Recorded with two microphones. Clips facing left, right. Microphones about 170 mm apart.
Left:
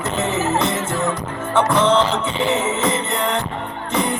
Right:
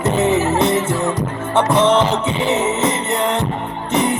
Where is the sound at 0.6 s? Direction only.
20° right (ahead or behind).